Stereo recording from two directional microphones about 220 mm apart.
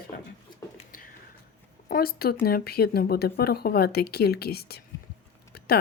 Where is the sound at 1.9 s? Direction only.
45° left (ahead or behind).